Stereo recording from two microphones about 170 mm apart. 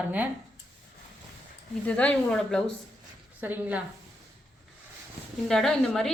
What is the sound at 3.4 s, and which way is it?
Speech, 10° right (ahead or behind).